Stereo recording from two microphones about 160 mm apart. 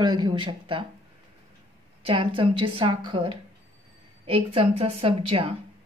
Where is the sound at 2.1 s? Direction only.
35° right (ahead or behind).